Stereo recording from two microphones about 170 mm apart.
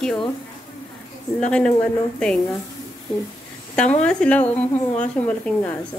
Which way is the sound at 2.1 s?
5° left (ahead or behind).